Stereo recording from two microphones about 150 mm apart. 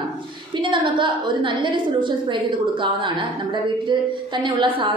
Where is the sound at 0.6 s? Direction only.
35° right (ahead or behind).